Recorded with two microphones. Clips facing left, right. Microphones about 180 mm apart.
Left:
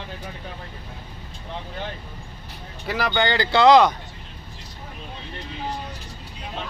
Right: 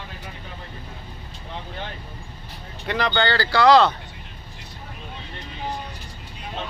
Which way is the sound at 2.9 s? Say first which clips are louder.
Even; 10° left (ahead or behind).